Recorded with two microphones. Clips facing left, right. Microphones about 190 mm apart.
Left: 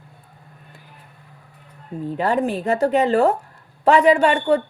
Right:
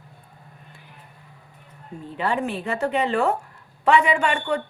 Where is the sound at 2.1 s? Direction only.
40° left (ahead or behind).